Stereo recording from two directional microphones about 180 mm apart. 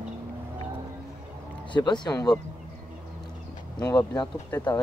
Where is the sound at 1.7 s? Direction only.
25° left (ahead or behind).